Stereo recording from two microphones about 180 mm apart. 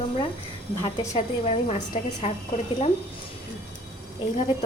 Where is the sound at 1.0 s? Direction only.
15° left (ahead or behind).